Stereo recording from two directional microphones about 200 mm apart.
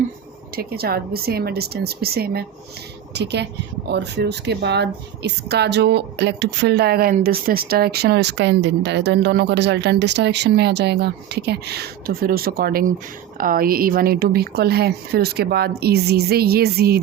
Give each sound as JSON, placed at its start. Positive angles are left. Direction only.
{"t": 0.5, "sound": "speech", "side_deg": -50}